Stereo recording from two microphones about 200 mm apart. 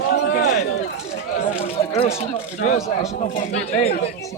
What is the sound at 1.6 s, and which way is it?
Speech, 30° left (ahead or behind).